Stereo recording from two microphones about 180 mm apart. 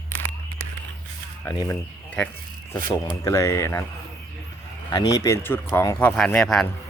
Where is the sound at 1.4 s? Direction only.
15° left (ahead or behind).